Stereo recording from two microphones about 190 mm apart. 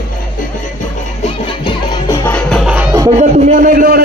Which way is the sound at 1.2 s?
30° left (ahead or behind).